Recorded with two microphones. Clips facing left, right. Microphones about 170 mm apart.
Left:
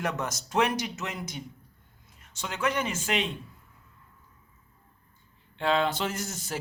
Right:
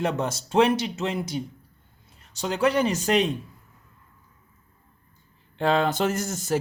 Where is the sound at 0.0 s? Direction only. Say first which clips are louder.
Right 5 dB; 30° right (ahead or behind).